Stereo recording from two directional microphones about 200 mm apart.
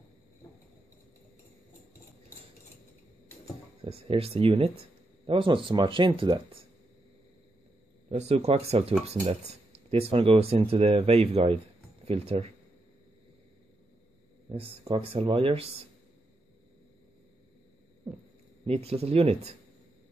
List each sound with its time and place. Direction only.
3.8 s speech: 30° right (ahead or behind)
8.1 s speech: 30° right (ahead or behind)
14.5 s speech: 30° right (ahead or behind)
18.7 s speech: 30° right (ahead or behind)